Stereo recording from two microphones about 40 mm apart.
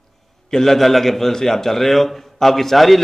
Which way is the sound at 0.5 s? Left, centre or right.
Centre.